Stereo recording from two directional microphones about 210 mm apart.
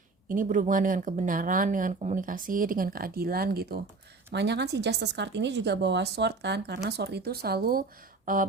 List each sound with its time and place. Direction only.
0.3 s a woman's voice: 40° right (ahead or behind)